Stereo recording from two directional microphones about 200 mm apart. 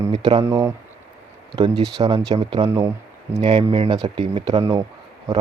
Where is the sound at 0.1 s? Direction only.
25° right (ahead or behind).